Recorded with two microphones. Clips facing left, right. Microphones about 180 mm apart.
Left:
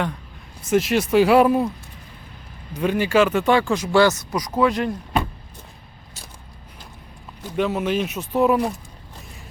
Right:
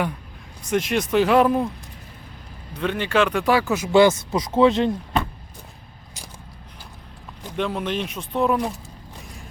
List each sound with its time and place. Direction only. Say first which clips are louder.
0.7 s speech: left 3 dB; 5° left (ahead or behind)
2.7 s speech: left 3 dB; 10° left (ahead or behind)
4.3 s speech: right 3 dB; 25° right (ahead or behind)
7.5 s speech: left 3 dB; 5° left (ahead or behind)